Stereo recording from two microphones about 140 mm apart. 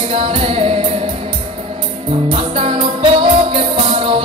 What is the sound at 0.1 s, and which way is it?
Music, 45° right (ahead or behind).